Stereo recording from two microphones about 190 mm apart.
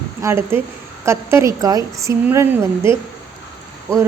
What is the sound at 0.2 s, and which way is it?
A woman's voice, 15° right (ahead or behind).